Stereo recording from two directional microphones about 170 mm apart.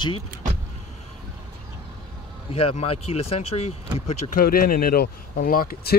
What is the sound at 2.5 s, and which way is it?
Speech, 35° left (ahead or behind).